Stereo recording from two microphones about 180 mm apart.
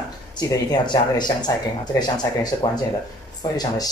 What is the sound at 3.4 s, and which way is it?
Speech, 20° left (ahead or behind).